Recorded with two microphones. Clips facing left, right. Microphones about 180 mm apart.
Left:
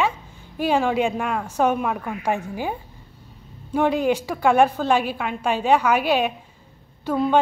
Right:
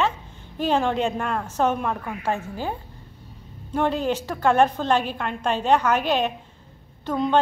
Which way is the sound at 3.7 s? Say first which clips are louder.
Left 3 dB; 10° left (ahead or behind).